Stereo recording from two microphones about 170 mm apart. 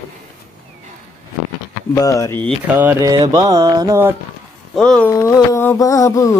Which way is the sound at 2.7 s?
10° right (ahead or behind).